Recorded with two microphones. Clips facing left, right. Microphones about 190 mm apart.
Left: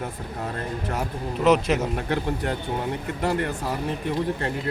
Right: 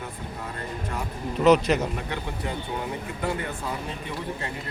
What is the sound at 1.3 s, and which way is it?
Speech, centre (ahead or behind).